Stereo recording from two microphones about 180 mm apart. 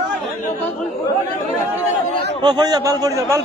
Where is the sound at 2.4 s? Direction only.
25° right (ahead or behind).